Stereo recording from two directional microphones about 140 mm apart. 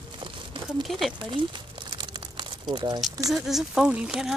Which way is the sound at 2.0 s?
35° right (ahead or behind).